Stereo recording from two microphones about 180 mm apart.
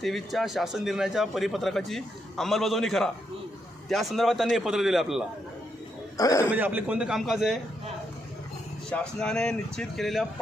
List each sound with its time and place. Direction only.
0.0 s speech: centre (ahead or behind)
6.1 s a man's voice: 20° left (ahead or behind)
6.5 s speech: 10° right (ahead or behind)
8.9 s speech: 5° left (ahead or behind)